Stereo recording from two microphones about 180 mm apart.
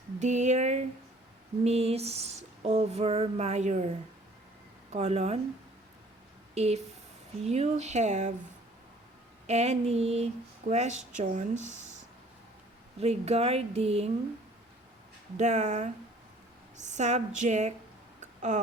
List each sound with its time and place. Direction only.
0.2 s female singing: 40° right (ahead or behind)
6.5 s speech: 35° right (ahead or behind)
7.4 s female singing: 35° right (ahead or behind)
9.5 s female singing: 35° right (ahead or behind)
13.0 s female singing: 35° right (ahead or behind)
15.4 s female singing: 40° right (ahead or behind)
18.2 s a sound: 40° right (ahead or behind)